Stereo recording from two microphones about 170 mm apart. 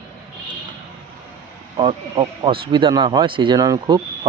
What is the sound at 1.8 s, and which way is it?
Speech, 30° right (ahead or behind).